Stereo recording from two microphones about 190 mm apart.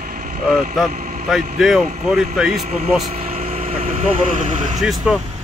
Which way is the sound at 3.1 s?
35° right (ahead or behind).